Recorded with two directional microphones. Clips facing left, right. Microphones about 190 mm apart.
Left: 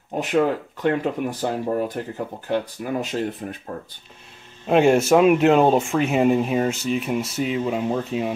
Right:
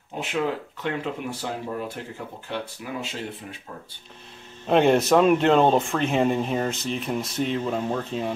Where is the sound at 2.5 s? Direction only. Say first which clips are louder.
Left 8 dB; 45° left (ahead or behind).